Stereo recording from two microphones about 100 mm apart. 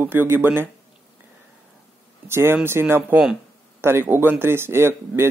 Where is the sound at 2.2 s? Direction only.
25° right (ahead or behind).